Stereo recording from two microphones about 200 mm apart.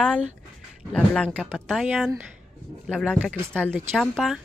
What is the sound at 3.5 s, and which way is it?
Speech, 5° left (ahead or behind).